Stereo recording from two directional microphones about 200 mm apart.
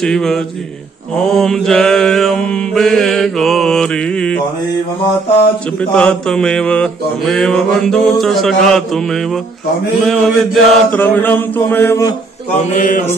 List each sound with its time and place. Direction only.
0.0 s mantra: 5° left (ahead or behind)
5.8 s mantra: 5° left (ahead or behind)
12.7 s mantra: 40° left (ahead or behind)